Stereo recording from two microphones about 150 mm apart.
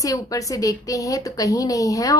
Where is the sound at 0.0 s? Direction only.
25° left (ahead or behind).